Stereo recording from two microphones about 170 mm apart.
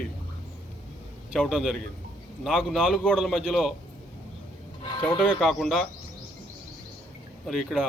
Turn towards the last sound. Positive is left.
turn(degrees=0)  # may be behind; listen again after turning